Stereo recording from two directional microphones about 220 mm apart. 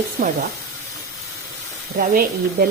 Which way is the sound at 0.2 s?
40° right (ahead or behind).